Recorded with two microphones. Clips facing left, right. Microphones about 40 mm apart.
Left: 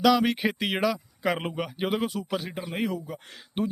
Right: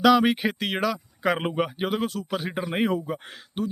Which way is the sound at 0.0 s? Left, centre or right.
Centre.